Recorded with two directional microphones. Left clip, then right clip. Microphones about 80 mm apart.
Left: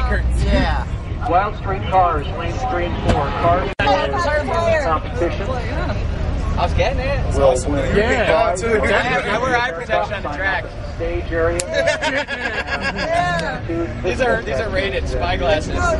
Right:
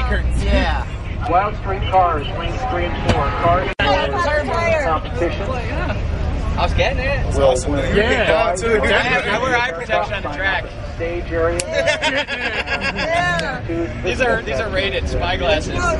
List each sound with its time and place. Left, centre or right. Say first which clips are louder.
0.1 s music: even; centre
1.3 s speech: even; centre
3.2 s speech: even; centre
4.6 s a sound: left 1 dB; centre
5.2 s speech: even; centre
6.6 s a man's voice: right 1 dB; centre